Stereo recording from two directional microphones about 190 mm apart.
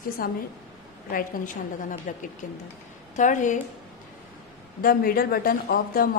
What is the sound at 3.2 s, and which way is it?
Speech, 40° left (ahead or behind).